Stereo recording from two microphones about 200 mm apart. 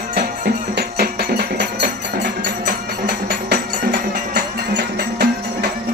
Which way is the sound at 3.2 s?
50° right (ahead or behind).